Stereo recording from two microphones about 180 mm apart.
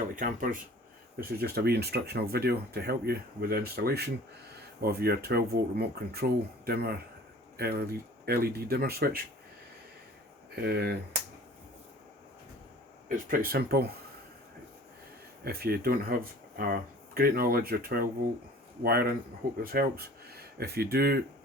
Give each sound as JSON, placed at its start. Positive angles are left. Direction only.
{"t": 0.2, "sound": "speech", "side_deg": -50}
{"t": 1.2, "sound": "speech", "side_deg": -60}
{"t": 10.5, "sound": "speech", "side_deg": -65}
{"t": 13.1, "sound": "speech", "side_deg": -55}
{"t": 15.4, "sound": "speech", "side_deg": -60}